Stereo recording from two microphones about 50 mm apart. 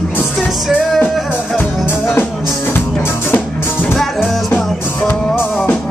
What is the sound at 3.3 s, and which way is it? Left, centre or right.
Music, left.